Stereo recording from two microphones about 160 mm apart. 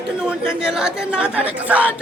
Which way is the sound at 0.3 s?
5° right (ahead or behind).